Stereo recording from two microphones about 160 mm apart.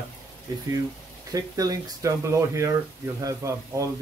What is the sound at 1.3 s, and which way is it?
Speech, 20° right (ahead or behind).